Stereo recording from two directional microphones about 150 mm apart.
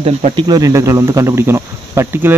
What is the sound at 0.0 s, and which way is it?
Speech, 35° right (ahead or behind).